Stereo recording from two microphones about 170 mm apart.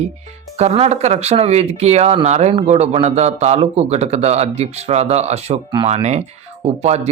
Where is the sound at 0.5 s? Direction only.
40° right (ahead or behind).